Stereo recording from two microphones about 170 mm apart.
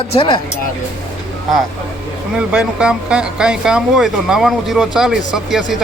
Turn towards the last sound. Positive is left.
turn(degrees=0)  # may be behind; listen again after turning